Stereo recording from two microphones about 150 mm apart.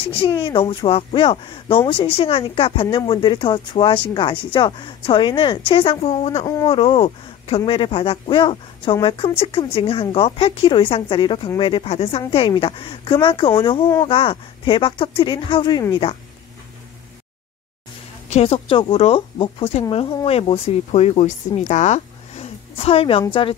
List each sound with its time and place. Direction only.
0.0 s a woman's voice: 35° left (ahead or behind)
6.4 s speech: 25° left (ahead or behind)
6.7 s a woman's voice: 40° left (ahead or behind)
18.3 s a woman's voice: 40° left (ahead or behind)